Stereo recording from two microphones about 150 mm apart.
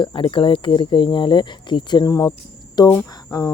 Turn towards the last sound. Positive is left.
turn(degrees=25)  # may be behind; listen again after turning